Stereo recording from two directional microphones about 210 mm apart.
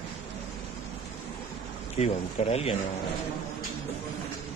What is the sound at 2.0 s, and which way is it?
Speech, 30° left (ahead or behind).